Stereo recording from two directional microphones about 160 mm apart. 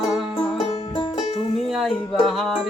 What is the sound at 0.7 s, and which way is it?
Music, 30° left (ahead or behind).